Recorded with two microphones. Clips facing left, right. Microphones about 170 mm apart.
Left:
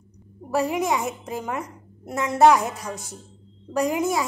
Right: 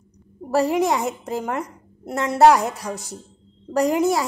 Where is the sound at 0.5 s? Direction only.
35° right (ahead or behind).